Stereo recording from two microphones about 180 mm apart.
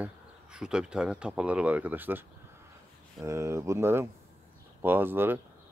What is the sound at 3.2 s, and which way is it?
Speech, 15° right (ahead or behind).